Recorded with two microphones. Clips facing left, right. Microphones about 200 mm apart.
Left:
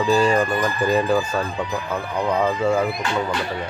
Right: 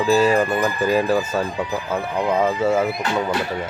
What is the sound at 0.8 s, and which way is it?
Speech, 5° right (ahead or behind).